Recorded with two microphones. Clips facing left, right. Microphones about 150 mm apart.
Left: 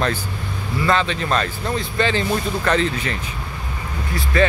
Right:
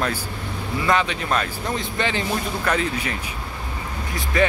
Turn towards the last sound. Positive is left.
turn(degrees=-15)  # may be behind; listen again after turning